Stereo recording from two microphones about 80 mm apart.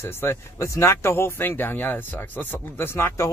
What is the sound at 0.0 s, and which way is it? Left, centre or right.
Speech, left.